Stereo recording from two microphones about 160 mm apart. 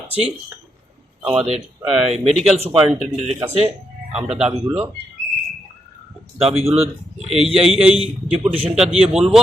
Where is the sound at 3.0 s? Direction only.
45° right (ahead or behind).